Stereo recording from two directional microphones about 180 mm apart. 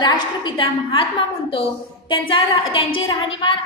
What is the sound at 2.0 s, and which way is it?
Speech, 30° left (ahead or behind).